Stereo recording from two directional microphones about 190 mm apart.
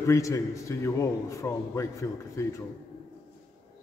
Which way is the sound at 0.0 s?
15° left (ahead or behind).